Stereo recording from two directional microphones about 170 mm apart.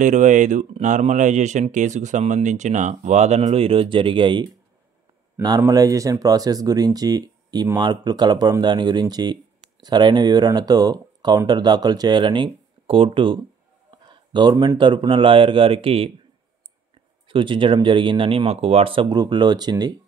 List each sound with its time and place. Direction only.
0.0 s speech: 45° right (ahead or behind)
17.3 s speech: 30° right (ahead or behind)